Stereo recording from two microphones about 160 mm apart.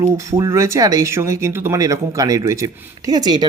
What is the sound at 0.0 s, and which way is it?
Speech, 20° right (ahead or behind).